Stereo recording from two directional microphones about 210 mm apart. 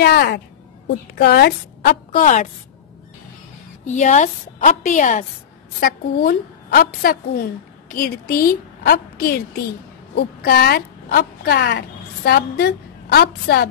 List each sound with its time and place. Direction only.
0.0 s a woman's voice: 50° left (ahead or behind)
3.8 s a woman's voice: 35° left (ahead or behind); by 13.7 s 50° left (ahead or behind)